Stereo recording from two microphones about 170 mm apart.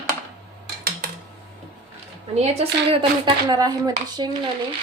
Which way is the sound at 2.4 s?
35° right (ahead or behind).